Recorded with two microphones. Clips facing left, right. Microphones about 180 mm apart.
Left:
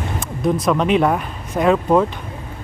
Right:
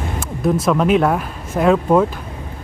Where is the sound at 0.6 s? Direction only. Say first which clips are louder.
Right 1 dB; centre (ahead or behind).